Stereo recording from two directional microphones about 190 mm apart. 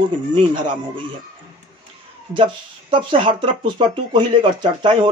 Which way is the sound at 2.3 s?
25° right (ahead or behind).